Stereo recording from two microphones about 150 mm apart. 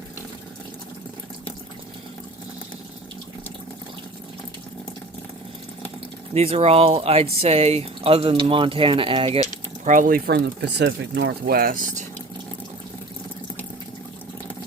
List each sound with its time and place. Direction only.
6.3 s speech: 45° right (ahead or behind)
9.5 s a sound: 55° right (ahead or behind); by 10.3 s 75° right (ahead or behind)
10.8 s speech: 90° right; by 12.0 s 65° right (ahead or behind)